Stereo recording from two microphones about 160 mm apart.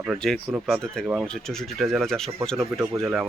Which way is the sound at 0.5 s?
Centre (ahead or behind).